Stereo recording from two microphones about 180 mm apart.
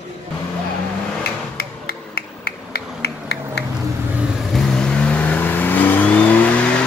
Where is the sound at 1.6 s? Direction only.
60° left (ahead or behind).